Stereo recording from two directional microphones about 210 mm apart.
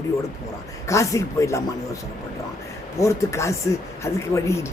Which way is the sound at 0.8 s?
15° left (ahead or behind).